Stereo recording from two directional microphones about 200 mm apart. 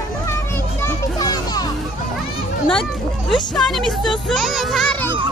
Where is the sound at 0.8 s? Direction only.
20° left (ahead or behind).